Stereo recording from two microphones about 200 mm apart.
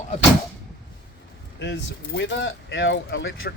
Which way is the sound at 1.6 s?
65° left (ahead or behind).